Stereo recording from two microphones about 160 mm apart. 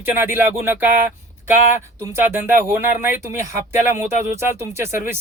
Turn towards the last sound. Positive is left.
turn(degrees=-15)  # may be behind; listen again after turning